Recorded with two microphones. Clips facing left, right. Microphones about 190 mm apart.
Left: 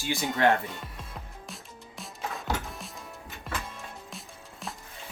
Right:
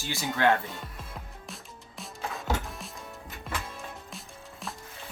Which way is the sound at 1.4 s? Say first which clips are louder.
Left 1 dB; centre (ahead or behind).